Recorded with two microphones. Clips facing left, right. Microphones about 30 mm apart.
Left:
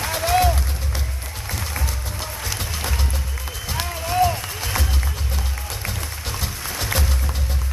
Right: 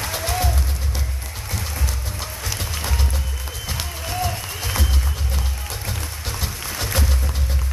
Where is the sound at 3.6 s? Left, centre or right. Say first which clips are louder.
Left 4 dB; centre.